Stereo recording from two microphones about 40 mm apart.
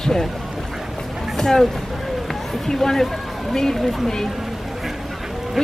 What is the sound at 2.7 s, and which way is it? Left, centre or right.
Speech, centre.